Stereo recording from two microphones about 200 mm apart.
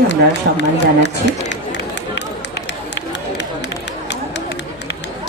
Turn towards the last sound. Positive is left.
turn(degrees=60)  # may be behind; listen again after turning